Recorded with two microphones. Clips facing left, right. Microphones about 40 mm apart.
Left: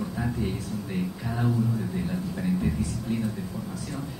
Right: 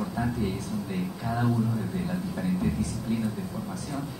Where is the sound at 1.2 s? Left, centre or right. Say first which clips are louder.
Right 1 dB; centre.